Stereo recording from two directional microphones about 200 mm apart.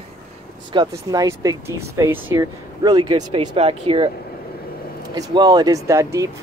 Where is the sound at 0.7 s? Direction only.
20° right (ahead or behind).